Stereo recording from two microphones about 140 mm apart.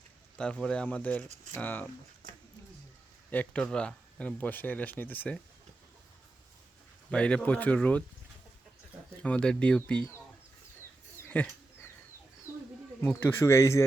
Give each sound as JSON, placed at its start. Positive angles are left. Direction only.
{"t": 0.3, "sound": "speech", "side_deg": 5}
{"t": 3.2, "sound": "speech", "side_deg": 10}
{"t": 7.1, "sound": "speech", "side_deg": 5}
{"t": 9.2, "sound": "speech", "side_deg": 5}
{"t": 11.2, "sound": "a sound", "side_deg": 15}
{"t": 13.0, "sound": "speech", "side_deg": 15}